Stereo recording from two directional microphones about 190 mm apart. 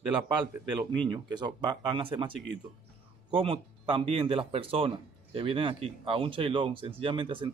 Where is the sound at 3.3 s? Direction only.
30° right (ahead or behind).